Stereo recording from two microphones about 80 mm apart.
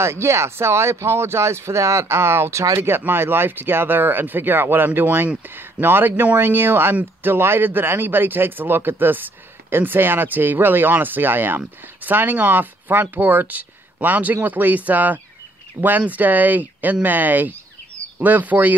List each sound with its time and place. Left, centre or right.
0.0 s speech: right